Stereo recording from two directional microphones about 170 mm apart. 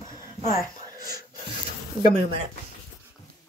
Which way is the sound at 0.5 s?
20° right (ahead or behind).